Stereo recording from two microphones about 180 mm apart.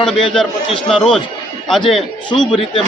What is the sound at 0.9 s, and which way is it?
Speech, centre (ahead or behind).